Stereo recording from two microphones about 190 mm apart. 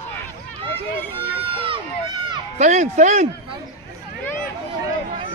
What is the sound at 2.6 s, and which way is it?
Speech, 35° right (ahead or behind).